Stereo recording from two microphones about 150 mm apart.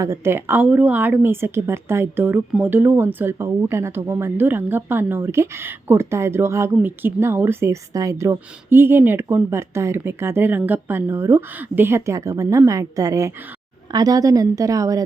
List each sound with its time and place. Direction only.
0.0 s a woman's voice: 20° right (ahead or behind)